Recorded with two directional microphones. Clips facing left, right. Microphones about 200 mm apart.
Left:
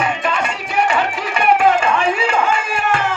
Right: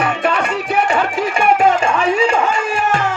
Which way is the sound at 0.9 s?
45° right (ahead or behind).